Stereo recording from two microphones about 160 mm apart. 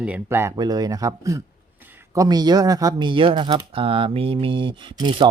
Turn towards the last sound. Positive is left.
turn(degrees=-30)  # may be behind; listen again after turning